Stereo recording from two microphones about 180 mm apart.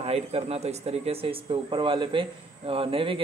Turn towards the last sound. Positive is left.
turn(degrees=-30)  # may be behind; listen again after turning